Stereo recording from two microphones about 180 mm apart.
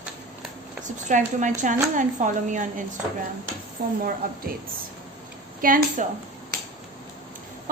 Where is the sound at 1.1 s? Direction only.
45° right (ahead or behind).